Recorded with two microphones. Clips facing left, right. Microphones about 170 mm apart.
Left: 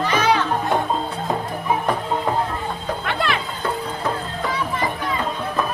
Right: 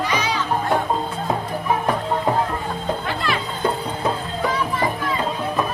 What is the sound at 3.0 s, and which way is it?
Music, 65° left (ahead or behind).